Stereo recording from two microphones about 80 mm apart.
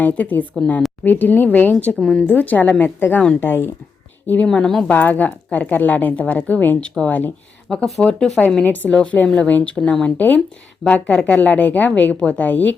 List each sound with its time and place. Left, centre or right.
0.0 s a woman's voice: centre
2.0 s a woman's voice: centre
2.2 s a woman's voice: left
4.4 s a woman's voice: centre
4.9 s a woman's voice: left
7.7 s a woman's voice: centre